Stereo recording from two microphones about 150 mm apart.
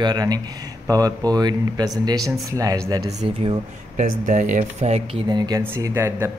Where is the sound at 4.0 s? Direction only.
55° right (ahead or behind).